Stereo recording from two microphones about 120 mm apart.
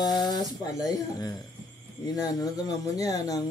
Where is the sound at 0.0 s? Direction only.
35° left (ahead or behind).